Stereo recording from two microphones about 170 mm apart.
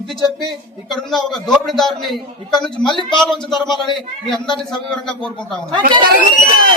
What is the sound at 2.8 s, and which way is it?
Speech, 25° left (ahead or behind).